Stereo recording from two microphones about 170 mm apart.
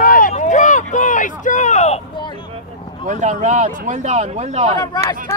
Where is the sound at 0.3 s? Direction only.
45° left (ahead or behind).